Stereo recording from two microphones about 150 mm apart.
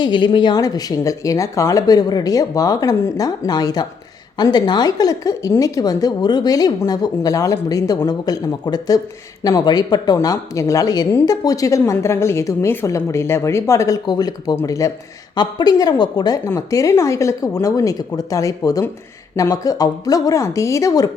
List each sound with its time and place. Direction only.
0.0 s a woman's voice: 30° left (ahead or behind)